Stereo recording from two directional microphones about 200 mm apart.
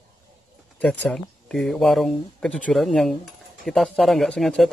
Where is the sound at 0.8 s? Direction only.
5° left (ahead or behind).